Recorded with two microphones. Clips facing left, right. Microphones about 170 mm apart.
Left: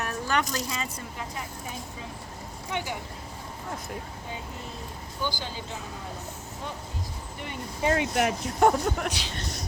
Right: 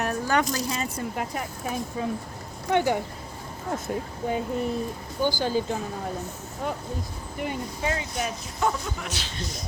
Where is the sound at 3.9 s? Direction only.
30° right (ahead or behind).